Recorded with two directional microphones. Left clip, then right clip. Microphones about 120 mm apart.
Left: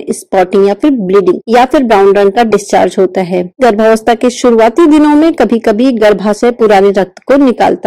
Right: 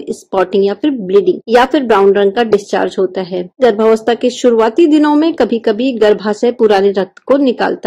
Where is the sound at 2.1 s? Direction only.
60° left (ahead or behind).